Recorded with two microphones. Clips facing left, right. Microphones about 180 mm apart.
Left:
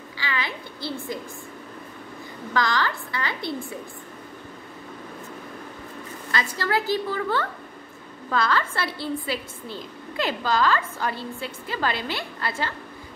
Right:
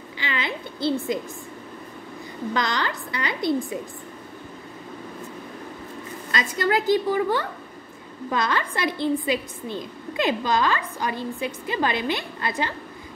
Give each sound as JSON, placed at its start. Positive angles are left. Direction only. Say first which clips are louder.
{"t": 0.2, "sound": "a sound", "louder": "right 2 dB", "side_deg": -20}
{"t": 2.5, "sound": "a woman's voice", "louder": "left 2 dB", "side_deg": -20}
{"t": 6.3, "sound": "a woman's voice", "louder": "right 2 dB", "side_deg": -20}